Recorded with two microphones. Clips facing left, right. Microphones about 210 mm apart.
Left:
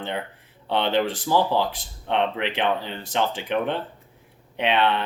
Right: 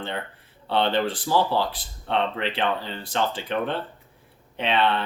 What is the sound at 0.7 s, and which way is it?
Speech, 15° left (ahead or behind).